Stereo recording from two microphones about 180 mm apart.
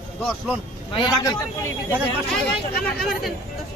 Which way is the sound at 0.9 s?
25° left (ahead or behind).